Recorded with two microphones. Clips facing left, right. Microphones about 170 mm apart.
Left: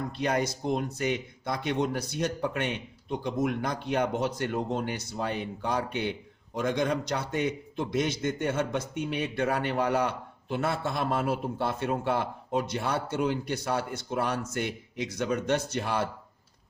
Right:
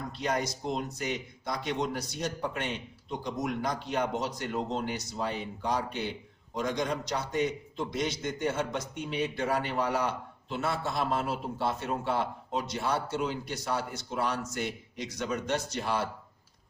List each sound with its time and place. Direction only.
0.1 s speech: 60° left (ahead or behind)